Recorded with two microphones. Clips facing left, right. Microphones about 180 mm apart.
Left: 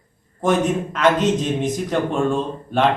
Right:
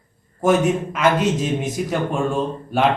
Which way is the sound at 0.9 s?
5° right (ahead or behind).